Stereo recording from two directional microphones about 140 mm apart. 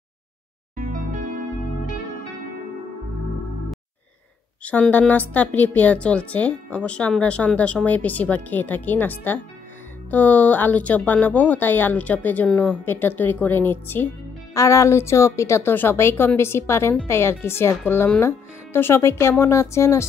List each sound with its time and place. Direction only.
0.7 s music: 75° right (ahead or behind)
4.6 s a woman's voice: 10° left (ahead or behind)